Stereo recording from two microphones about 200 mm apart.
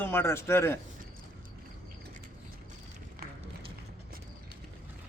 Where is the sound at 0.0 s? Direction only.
10° left (ahead or behind).